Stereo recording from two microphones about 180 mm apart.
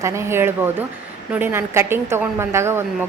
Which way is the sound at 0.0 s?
15° right (ahead or behind).